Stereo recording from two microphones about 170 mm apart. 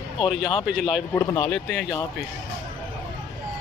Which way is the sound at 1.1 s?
15° left (ahead or behind).